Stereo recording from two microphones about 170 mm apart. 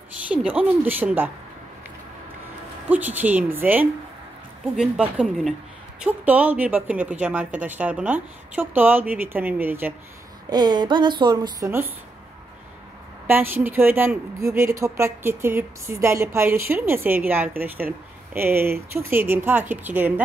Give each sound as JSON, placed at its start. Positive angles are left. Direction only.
{"t": 0.3, "sound": "a woman's voice", "side_deg": -5}
{"t": 2.9, "sound": "a woman's voice", "side_deg": -10}
{"t": 10.5, "sound": "a woman's voice", "side_deg": -25}
{"t": 13.3, "sound": "a woman's voice", "side_deg": -10}